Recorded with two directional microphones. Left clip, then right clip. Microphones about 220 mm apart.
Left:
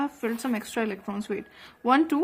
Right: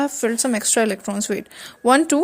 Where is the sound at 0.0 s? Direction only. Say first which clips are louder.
Right 9 dB; 30° right (ahead or behind).